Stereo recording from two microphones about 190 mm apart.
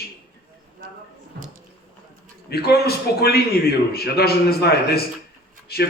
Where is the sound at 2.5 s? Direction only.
55° left (ahead or behind).